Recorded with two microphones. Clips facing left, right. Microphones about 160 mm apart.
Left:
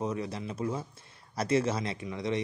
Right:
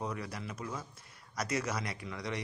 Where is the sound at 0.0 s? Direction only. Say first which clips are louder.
Left 6 dB; 20° left (ahead or behind).